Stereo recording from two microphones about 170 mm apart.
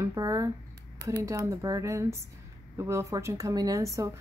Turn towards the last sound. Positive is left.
turn(degrees=-20)  # may be behind; listen again after turning